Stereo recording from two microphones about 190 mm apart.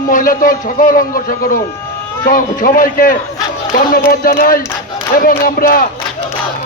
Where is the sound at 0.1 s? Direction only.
45° left (ahead or behind).